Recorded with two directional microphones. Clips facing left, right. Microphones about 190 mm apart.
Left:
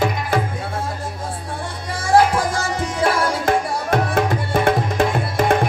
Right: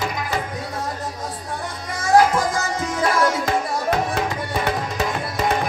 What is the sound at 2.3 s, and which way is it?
Music, 30° left (ahead or behind).